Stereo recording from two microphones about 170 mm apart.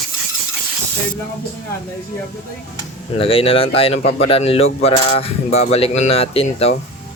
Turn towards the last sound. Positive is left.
turn(degrees=35)  # may be behind; listen again after turning